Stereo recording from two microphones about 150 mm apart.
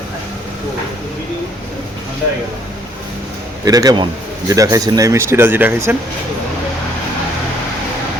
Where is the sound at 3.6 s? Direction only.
25° right (ahead or behind).